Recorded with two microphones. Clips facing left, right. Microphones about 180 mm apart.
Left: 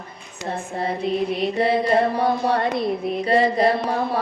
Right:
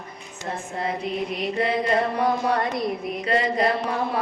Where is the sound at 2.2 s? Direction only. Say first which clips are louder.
Left 2 dB; 30° left (ahead or behind).